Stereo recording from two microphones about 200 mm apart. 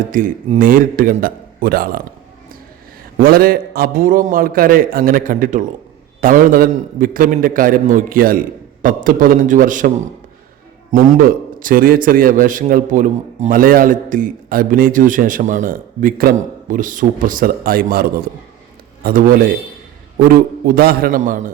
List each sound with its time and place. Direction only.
0.1 s a man's voice: 40° right (ahead or behind)
3.2 s a man's voice: 45° right (ahead or behind)
10.9 s a man's voice: 45° right (ahead or behind)
19.0 s a man's voice: 45° right (ahead or behind)
20.7 s a man's voice: 50° right (ahead or behind)